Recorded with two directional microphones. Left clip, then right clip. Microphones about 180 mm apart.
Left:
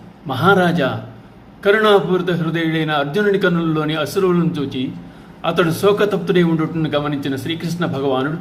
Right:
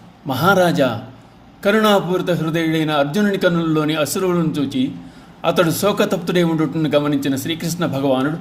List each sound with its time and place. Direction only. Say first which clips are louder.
0.3 s a man's voice: even; 45° right (ahead or behind)